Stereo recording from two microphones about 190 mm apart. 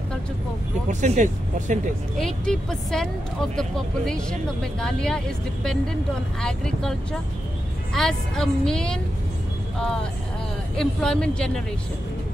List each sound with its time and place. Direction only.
0.8 s speech: 40° right (ahead or behind)
2.1 s speech: 5° left (ahead or behind)
10.8 s speech: 5° left (ahead or behind)